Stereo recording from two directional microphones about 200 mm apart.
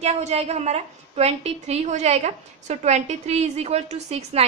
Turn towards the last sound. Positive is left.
turn(degrees=-30)  # may be behind; listen again after turning